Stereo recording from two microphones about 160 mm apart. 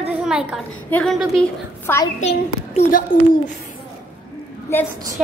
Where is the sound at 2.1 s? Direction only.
45° left (ahead or behind).